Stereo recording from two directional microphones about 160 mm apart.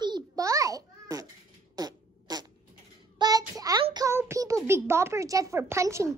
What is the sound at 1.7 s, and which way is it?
Fart, 25° right (ahead or behind).